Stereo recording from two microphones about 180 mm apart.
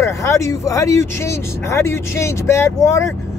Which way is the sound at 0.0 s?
15° left (ahead or behind).